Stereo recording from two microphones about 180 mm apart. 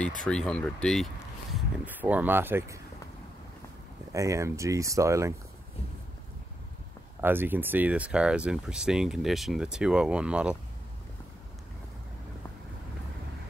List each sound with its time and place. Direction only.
0.0 s speech: 5° left (ahead or behind)
1.9 s speech: 10° right (ahead or behind)
4.1 s speech: 15° right (ahead or behind)
7.2 s speech: 10° right (ahead or behind)